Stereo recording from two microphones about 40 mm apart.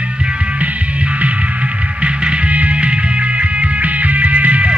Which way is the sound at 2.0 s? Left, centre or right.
Right.